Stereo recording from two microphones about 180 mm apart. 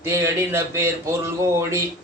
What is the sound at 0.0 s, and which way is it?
Speech, 15° right (ahead or behind).